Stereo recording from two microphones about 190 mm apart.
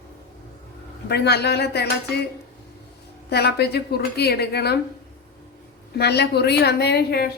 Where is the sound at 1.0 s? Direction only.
60° left (ahead or behind).